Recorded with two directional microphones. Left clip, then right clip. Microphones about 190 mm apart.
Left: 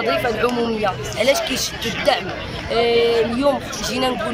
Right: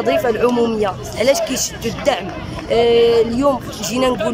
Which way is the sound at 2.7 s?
35° right (ahead or behind).